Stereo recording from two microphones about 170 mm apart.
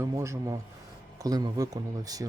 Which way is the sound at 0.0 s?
15° right (ahead or behind).